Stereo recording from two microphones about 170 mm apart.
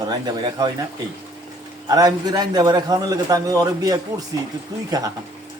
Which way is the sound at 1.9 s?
20° right (ahead or behind).